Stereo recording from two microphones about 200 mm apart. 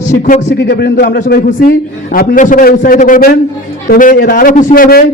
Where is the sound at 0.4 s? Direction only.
60° left (ahead or behind).